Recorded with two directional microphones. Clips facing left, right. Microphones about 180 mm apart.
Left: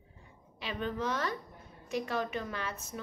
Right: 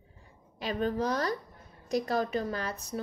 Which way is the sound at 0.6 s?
40° right (ahead or behind).